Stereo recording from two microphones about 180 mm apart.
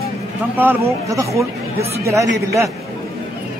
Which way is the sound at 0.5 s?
10° right (ahead or behind).